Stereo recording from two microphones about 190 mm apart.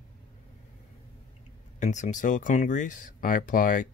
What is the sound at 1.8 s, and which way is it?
Speech, 40° left (ahead or behind).